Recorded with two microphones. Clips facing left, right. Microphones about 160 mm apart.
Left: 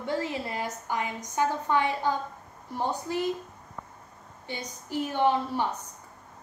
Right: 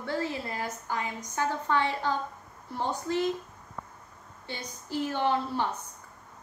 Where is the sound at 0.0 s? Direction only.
15° left (ahead or behind).